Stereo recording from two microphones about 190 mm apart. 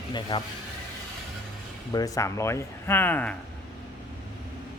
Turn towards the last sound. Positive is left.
turn(degrees=10)  # may be behind; listen again after turning